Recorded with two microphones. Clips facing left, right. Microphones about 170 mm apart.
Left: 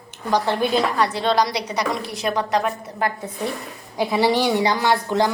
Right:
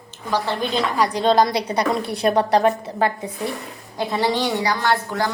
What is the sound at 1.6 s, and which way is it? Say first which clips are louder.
A woman's voice: right 3 dB; 30° right (ahead or behind).